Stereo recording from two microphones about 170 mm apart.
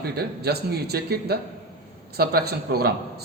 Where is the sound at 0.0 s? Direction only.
70° right (ahead or behind).